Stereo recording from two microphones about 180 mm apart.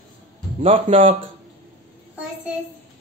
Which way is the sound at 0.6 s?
30° right (ahead or behind).